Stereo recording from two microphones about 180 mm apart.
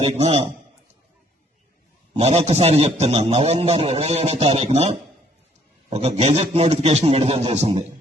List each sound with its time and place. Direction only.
0.0 s a man's voice: 35° right (ahead or behind)
2.1 s a man's voice: 35° right (ahead or behind)